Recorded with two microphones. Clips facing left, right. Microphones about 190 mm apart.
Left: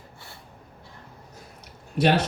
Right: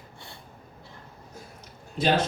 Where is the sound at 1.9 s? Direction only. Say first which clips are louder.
Left 2 dB; 70° left (ahead or behind).